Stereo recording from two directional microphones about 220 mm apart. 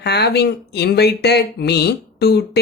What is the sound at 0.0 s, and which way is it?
Speech, 50° left (ahead or behind).